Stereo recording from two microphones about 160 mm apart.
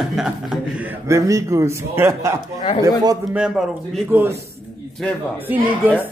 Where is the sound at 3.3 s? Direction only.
5° right (ahead or behind).